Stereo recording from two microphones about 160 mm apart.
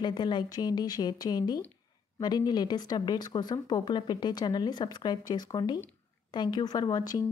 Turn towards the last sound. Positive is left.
turn(degrees=25)  # may be behind; listen again after turning